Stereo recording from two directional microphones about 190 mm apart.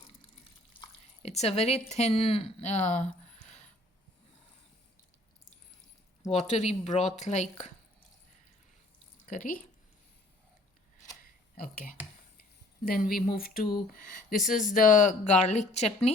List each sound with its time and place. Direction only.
1.2 s speech: 35° left (ahead or behind)
6.2 s speech: 35° left (ahead or behind)
9.2 s speech: 45° left (ahead or behind)
11.5 s speech: 50° left (ahead or behind)